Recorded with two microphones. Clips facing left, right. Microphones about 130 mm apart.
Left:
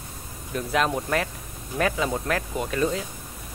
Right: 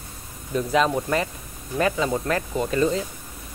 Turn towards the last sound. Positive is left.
turn(degrees=0)  # may be behind; listen again after turning